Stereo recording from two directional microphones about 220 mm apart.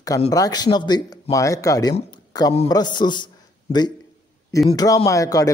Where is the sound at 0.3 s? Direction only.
15° left (ahead or behind).